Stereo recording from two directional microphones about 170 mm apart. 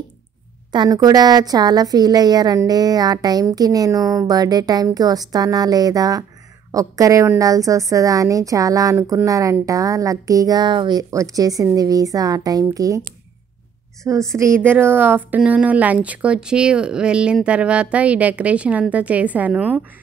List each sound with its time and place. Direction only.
0.7 s a woman's voice: 25° right (ahead or behind); by 19.8 s 10° right (ahead or behind)